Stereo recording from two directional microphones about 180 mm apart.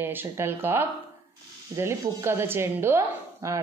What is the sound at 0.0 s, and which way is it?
Speech, 10° right (ahead or behind).